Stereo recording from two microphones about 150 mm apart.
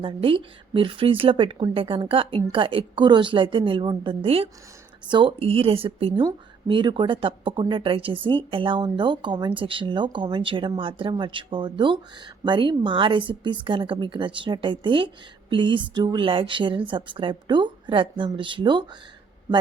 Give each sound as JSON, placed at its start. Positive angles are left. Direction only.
{"t": 0.0, "sound": "a woman's voice", "side_deg": -35}